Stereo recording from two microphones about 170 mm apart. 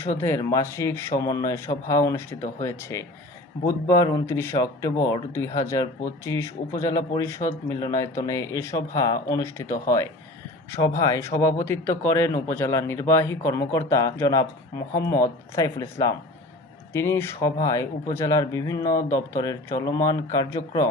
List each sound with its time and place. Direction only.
0.2 s speech: 15° left (ahead or behind)
15.5 s speech: 15° left (ahead or behind)